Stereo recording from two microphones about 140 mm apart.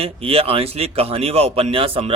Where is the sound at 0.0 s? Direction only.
45° right (ahead or behind).